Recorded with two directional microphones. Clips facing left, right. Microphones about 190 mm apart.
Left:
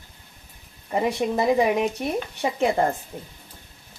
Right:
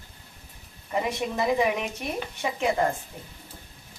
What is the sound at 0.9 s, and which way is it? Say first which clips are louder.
Speech: left 5 dB; 35° left (ahead or behind).